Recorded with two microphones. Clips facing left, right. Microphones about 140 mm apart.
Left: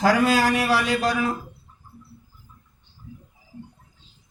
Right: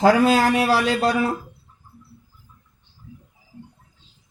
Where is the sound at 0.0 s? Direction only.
25° right (ahead or behind).